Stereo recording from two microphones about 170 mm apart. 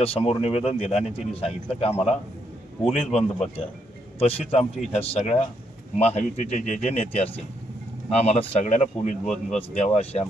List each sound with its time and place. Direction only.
0.0 s speech: 35° left (ahead or behind)
9.2 s speech: 5° left (ahead or behind)
9.6 s speech: 40° left (ahead or behind)